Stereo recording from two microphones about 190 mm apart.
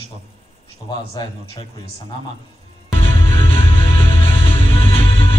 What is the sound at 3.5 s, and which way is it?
Music, 30° left (ahead or behind).